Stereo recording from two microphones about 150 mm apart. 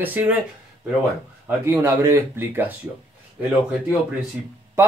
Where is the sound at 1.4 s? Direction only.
15° right (ahead or behind).